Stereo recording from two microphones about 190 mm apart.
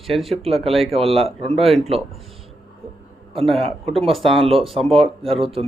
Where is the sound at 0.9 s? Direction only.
30° right (ahead or behind).